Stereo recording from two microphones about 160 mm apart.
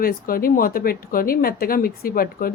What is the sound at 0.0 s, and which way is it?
A woman's voice, 65° left (ahead or behind).